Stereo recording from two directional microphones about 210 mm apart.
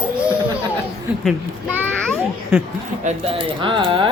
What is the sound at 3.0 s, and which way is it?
Speech, 25° right (ahead or behind).